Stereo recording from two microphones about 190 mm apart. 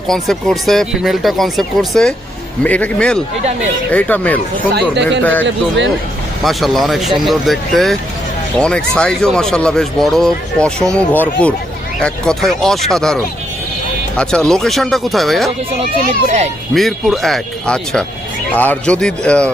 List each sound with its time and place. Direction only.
0.1 s speech: centre (ahead or behind)
4.7 s speech: 65° right (ahead or behind)
5.2 s speech: 10° left (ahead or behind)
16.2 s a child's voice: 40° right (ahead or behind)
16.7 s speech: centre (ahead or behind)